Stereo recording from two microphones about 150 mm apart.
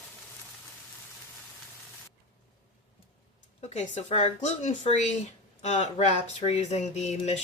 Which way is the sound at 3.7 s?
45° left (ahead or behind).